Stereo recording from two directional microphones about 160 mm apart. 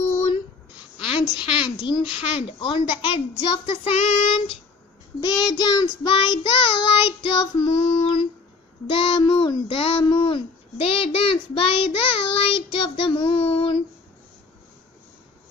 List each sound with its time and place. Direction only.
1.0 s a woman's voice: 30° left (ahead or behind)
2.1 s child singing: 35° left (ahead or behind)